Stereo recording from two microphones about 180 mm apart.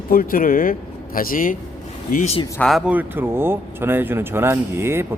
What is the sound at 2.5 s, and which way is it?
Speech, 5° left (ahead or behind).